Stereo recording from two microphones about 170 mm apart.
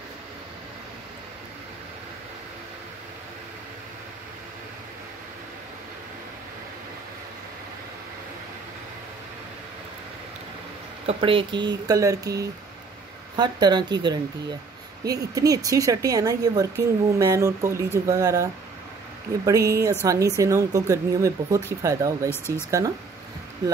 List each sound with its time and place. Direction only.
11.1 s speech: 30° right (ahead or behind)
15.0 s speech: 20° right (ahead or behind)